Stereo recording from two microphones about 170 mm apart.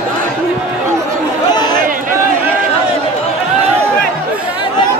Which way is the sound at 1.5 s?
25° left (ahead or behind).